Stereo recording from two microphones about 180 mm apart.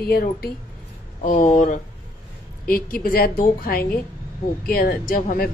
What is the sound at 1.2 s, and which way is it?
Speech, 45° left (ahead or behind).